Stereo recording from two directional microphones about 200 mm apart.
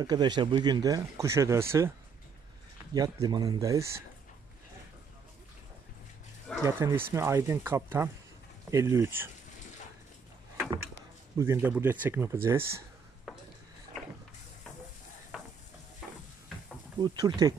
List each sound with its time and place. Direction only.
0.0 s speech: 20° right (ahead or behind)
6.6 s speech: 15° right (ahead or behind)
11.3 s speech: 10° right (ahead or behind)
13.3 s a sound: centre (ahead or behind)
15.3 s stir: 5° right (ahead or behind)
17.0 s speech: 20° right (ahead or behind)